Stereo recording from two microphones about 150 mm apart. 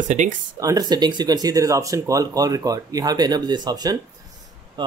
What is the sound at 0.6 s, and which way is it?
Speech, 25° right (ahead or behind).